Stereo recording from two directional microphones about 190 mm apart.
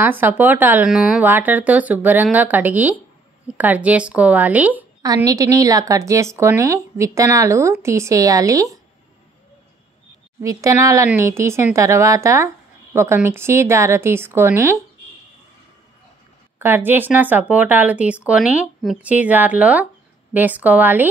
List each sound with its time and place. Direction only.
0.0 s a woman's voice: 10° right (ahead or behind)
5.0 s a woman's voice: 20° right (ahead or behind)
10.4 s a woman's voice: 15° right (ahead or behind)
16.5 s a woman's voice: 10° right (ahead or behind)